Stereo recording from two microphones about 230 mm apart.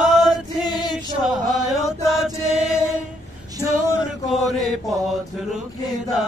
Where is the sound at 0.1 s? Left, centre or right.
Centre.